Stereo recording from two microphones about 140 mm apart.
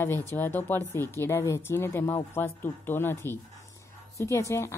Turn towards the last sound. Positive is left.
turn(degrees=20)  # may be behind; listen again after turning